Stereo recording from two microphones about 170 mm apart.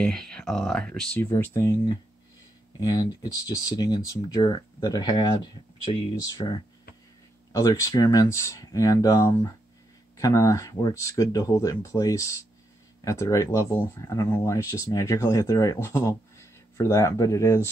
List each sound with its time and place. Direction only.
0.0 s speech: 5° left (ahead or behind)
1.3 s speech: 15° left (ahead or behind)